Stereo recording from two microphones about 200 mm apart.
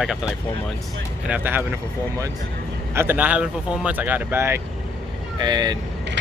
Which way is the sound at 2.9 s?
10° right (ahead or behind).